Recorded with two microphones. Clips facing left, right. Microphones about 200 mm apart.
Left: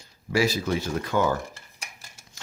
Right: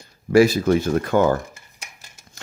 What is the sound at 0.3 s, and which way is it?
Speech, 55° right (ahead or behind).